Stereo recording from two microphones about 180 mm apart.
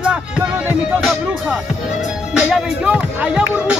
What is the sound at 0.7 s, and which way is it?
Music, 5° right (ahead or behind).